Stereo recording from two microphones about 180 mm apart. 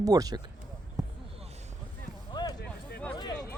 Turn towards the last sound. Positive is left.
turn(degrees=25)  # may be behind; listen again after turning